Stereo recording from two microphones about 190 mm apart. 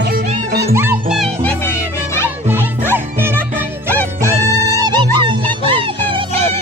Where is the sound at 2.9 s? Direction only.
10° right (ahead or behind).